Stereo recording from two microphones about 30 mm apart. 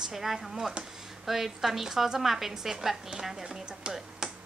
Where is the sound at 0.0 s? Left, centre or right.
Centre.